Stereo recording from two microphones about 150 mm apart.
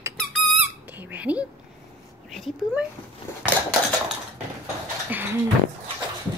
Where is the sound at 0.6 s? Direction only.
10° right (ahead or behind).